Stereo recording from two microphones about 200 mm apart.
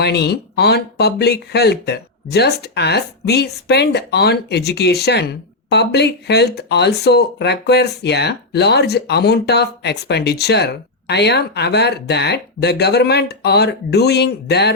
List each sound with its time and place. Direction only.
0.0 s speech: 55° left (ahead or behind)